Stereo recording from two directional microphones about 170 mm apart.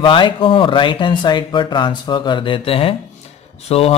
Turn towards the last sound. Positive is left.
turn(degrees=35)  # may be behind; listen again after turning